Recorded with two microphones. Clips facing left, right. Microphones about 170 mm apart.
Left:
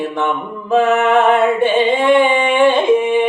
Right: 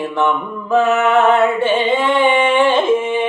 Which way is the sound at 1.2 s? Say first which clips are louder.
Left 1 dB; 15° left (ahead or behind).